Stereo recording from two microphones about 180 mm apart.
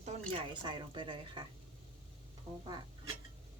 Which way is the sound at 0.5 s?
25° right (ahead or behind).